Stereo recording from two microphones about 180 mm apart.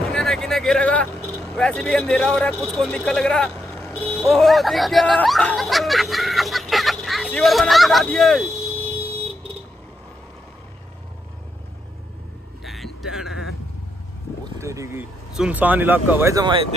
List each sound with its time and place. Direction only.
0.1 s speech: centre (ahead or behind)
12.6 s a sound: centre (ahead or behind)
14.6 s boat: 15° right (ahead or behind)
15.3 s speech: 5° right (ahead or behind)